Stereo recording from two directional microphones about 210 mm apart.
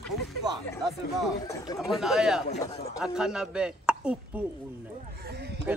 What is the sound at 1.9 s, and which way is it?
A man's voice, centre (ahead or behind).